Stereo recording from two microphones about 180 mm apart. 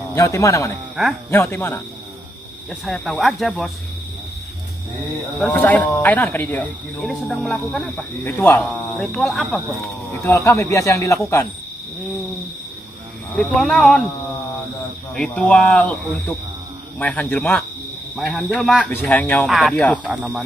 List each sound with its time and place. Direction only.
0.1 s speech: 15° left (ahead or behind)
2.7 s speech: centre (ahead or behind)
5.5 s speech: 10° left (ahead or behind)
10.2 s speech: 15° left (ahead or behind)
13.4 s speech: 5° left (ahead or behind)
15.1 s speech: 5° left (ahead or behind)
18.9 s speech: 10° left (ahead or behind)
20.1 s speech: 5° right (ahead or behind)